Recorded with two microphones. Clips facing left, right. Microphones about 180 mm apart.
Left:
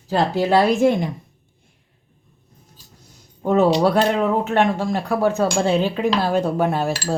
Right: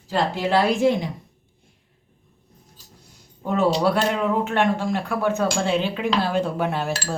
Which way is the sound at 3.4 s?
40° left (ahead or behind).